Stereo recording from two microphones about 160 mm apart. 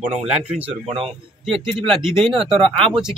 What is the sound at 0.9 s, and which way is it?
Speech, 35° right (ahead or behind).